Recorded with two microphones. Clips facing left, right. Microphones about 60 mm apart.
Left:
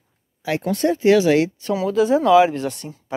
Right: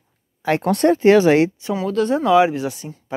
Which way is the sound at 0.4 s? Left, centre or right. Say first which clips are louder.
Right 4 dB; right.